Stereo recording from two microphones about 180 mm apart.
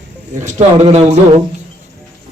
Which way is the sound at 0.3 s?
40° right (ahead or behind).